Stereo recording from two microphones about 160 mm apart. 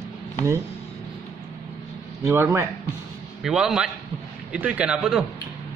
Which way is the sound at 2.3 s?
15° right (ahead or behind).